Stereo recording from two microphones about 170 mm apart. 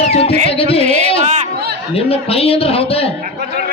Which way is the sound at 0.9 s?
40° right (ahead or behind).